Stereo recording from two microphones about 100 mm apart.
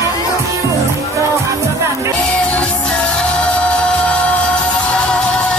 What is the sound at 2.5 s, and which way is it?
Music, 10° left (ahead or behind).